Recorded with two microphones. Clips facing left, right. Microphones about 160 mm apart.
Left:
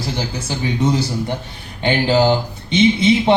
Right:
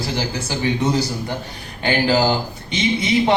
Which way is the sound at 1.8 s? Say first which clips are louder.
Left 2 dB; 20° left (ahead or behind).